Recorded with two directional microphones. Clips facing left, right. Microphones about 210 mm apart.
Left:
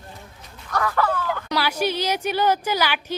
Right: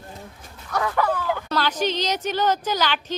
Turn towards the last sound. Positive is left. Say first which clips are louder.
# even
turn(degrees=10)  # may be behind; listen again after turning